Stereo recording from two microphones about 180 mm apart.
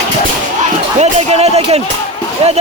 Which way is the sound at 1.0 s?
35° right (ahead or behind).